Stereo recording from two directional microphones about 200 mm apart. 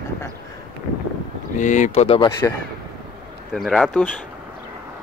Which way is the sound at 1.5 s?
40° left (ahead or behind).